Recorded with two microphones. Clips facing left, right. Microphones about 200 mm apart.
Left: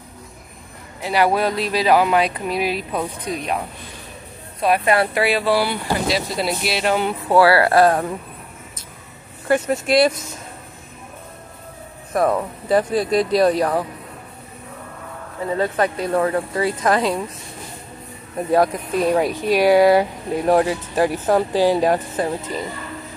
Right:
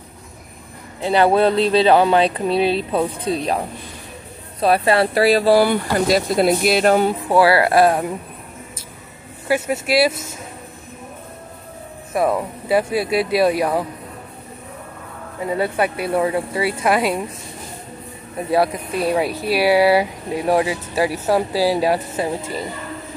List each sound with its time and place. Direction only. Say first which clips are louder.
1.0 s speech: right 4 dB; 30° right (ahead or behind); by 7.2 s 45° right (ahead or behind)
7.2 s speech: left 3 dB; 15° right (ahead or behind)
9.5 s speech: left 1 dB; 5° right (ahead or behind)
12.1 s speech: even; 5° right (ahead or behind)
15.4 s speech: even; 10° right (ahead or behind)
18.5 s speech: left 1 dB; 10° right (ahead or behind)